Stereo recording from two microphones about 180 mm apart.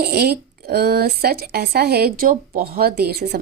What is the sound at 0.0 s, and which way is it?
Speech, 60° right (ahead or behind).